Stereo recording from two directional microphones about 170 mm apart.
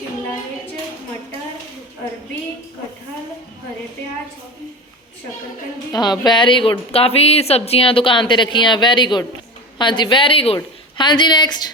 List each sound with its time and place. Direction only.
5.9 s a woman's voice: 25° left (ahead or behind)